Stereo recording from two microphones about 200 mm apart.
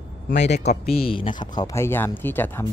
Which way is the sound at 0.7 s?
30° left (ahead or behind).